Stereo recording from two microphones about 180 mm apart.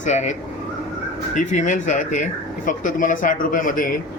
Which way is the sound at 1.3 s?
45° left (ahead or behind).